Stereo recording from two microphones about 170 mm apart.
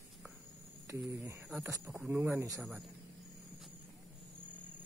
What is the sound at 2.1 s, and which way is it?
Speech, 15° right (ahead or behind).